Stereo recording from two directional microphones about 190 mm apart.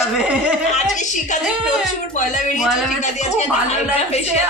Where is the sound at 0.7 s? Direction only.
40° left (ahead or behind).